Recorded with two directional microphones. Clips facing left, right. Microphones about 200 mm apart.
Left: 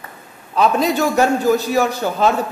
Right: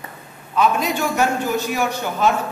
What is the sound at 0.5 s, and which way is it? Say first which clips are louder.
A man's voice: left 3 dB; 35° left (ahead or behind).